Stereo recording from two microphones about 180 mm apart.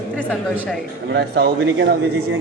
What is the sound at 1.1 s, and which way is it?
Speech, 65° right (ahead or behind).